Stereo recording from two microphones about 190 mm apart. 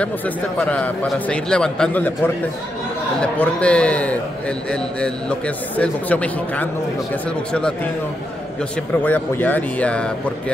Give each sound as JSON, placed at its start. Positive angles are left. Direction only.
{"t": 0.6, "sound": "a man's voice", "side_deg": 5}
{"t": 5.8, "sound": "a man's voice", "side_deg": 5}
{"t": 9.0, "sound": "a man's voice", "side_deg": 10}